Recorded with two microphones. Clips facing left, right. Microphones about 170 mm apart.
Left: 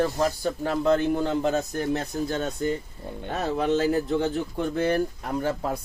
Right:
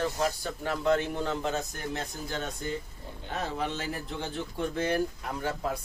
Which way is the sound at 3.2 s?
60° left (ahead or behind).